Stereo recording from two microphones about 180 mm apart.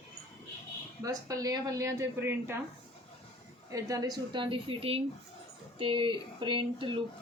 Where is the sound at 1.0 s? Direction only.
20° right (ahead or behind).